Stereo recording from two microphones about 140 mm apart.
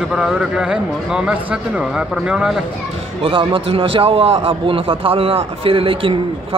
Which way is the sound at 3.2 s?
40° right (ahead or behind).